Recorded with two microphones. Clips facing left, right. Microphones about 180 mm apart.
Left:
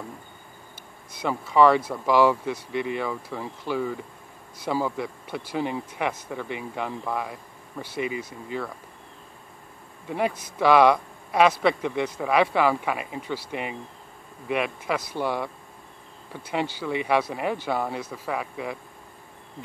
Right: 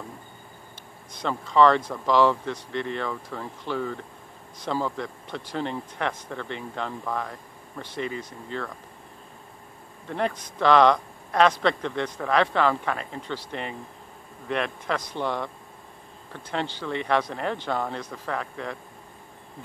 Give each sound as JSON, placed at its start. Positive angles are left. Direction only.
{"t": 1.1, "sound": "speech", "side_deg": 10}
{"t": 10.0, "sound": "speech", "side_deg": 10}